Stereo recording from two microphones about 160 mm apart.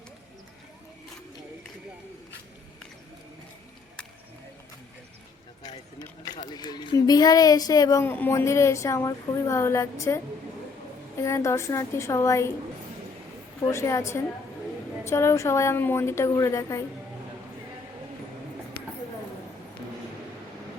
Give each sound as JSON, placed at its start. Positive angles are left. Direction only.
{"t": 6.2, "sound": "speech", "side_deg": 25}
{"t": 11.2, "sound": "a woman's voice", "side_deg": 20}
{"t": 13.7, "sound": "a woman's voice", "side_deg": 20}